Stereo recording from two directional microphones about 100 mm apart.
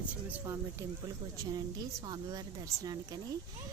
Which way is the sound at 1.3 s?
35° right (ahead or behind).